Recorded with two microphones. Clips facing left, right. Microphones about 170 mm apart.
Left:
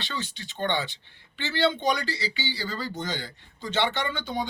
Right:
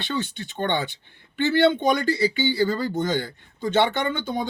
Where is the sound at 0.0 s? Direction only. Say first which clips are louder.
Right 7 dB; 55° right (ahead or behind).